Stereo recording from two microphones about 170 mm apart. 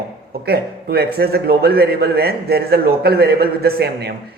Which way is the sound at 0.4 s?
70° right (ahead or behind).